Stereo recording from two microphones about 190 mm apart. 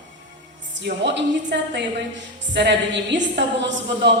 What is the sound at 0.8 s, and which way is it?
A woman's voice, 65° right (ahead or behind).